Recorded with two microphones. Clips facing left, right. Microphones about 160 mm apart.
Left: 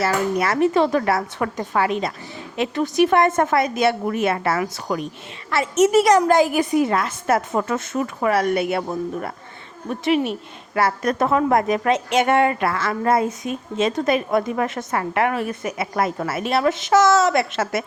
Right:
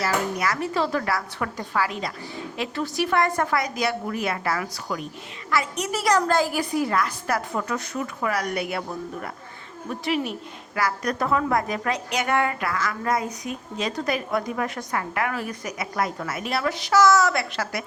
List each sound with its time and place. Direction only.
0.0 s a woman's voice: 25° left (ahead or behind)
9.9 s a woman's voice: 20° left (ahead or behind)